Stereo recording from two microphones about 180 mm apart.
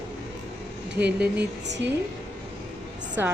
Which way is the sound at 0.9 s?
70° right (ahead or behind).